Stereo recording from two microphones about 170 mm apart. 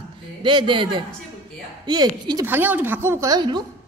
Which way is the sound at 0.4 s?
30° right (ahead or behind).